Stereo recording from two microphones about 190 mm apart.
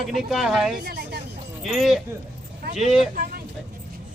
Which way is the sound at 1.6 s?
Centre (ahead or behind).